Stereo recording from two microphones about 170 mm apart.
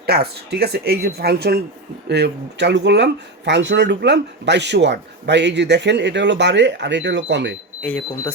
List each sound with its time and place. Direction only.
0.0 s speech: 70° right (ahead or behind)
2.0 s speech: 80° right
7.8 s speech: 5° left (ahead or behind)